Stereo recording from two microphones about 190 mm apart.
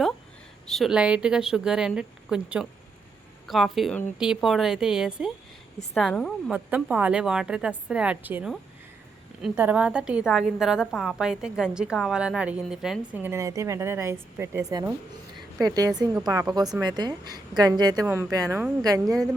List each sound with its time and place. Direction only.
0.7 s a woman's voice: centre (ahead or behind); by 19.1 s 20° right (ahead or behind)